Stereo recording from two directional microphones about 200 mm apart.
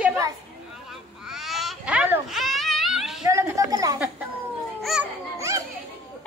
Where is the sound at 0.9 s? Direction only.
Centre (ahead or behind).